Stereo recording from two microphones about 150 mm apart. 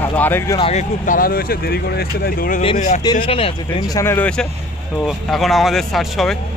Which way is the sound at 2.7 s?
55° left (ahead or behind).